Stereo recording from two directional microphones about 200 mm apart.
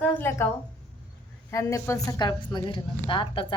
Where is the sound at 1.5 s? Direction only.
15° left (ahead or behind).